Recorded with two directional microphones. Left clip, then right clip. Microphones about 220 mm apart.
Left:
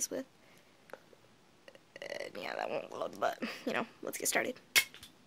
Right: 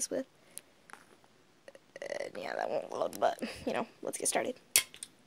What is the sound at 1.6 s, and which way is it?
Speech, 15° right (ahead or behind).